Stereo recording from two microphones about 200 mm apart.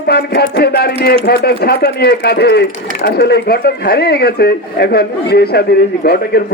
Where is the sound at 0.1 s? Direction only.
55° left (ahead or behind).